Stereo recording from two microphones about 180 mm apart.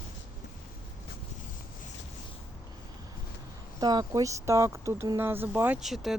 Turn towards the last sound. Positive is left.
turn(degrees=0)  # may be behind; listen again after turning